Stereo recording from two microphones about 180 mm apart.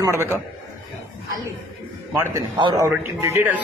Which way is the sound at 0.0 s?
15° right (ahead or behind).